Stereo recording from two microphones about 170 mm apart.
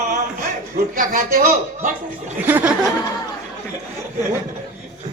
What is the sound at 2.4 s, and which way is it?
Speech, 10° right (ahead or behind).